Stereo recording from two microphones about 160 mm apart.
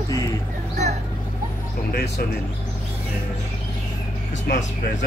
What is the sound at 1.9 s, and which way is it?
Speech, 80° left.